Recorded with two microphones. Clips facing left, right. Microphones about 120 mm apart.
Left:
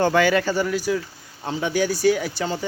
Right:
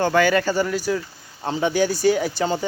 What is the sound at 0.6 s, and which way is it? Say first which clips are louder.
Speech: even; 10° left (ahead or behind).